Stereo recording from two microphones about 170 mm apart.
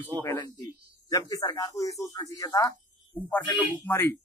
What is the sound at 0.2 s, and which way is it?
A man's voice, 15° left (ahead or behind).